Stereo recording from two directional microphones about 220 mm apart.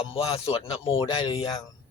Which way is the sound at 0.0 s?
25° left (ahead or behind).